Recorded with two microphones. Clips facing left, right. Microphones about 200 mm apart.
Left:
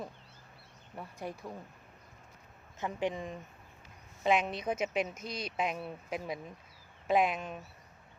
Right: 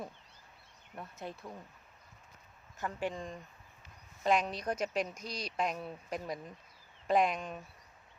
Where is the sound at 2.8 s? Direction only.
20° left (ahead or behind).